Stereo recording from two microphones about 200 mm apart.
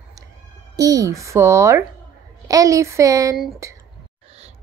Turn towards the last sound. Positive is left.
turn(degrees=-15)  # may be behind; listen again after turning